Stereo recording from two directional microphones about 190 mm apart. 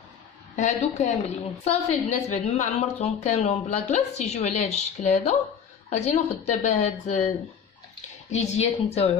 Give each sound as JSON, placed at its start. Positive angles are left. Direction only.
{"t": 0.6, "sound": "a woman's voice", "side_deg": 40}